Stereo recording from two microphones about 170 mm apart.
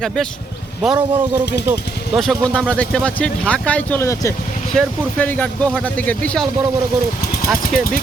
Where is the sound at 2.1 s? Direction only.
Centre (ahead or behind).